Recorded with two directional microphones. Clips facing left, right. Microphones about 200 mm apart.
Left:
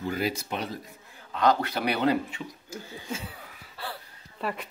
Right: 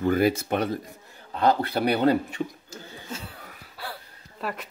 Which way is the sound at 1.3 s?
30° right (ahead or behind).